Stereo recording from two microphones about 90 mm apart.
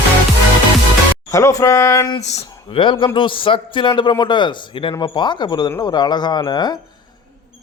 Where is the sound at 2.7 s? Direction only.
70° left (ahead or behind).